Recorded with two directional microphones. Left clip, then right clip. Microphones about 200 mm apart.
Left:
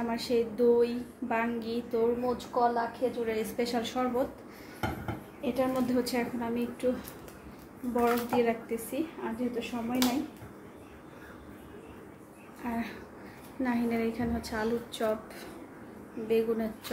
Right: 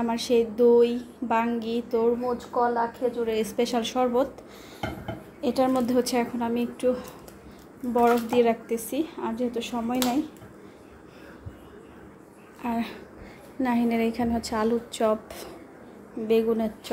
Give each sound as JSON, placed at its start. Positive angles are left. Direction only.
{"t": 0.0, "sound": "a woman's voice", "side_deg": -40}
{"t": 5.4, "sound": "a woman's voice", "side_deg": -55}
{"t": 8.0, "sound": "a woman's voice", "side_deg": -45}
{"t": 12.6, "sound": "a woman's voice", "side_deg": -40}
{"t": 16.3, "sound": "a woman's voice", "side_deg": -35}